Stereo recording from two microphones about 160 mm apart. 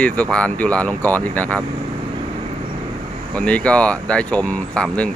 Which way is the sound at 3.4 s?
10° left (ahead or behind).